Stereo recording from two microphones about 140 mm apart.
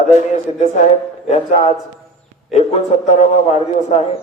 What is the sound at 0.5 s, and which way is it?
Speech, 45° left (ahead or behind).